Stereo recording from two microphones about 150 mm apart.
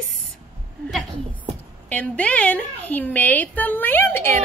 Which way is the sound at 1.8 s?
10° left (ahead or behind).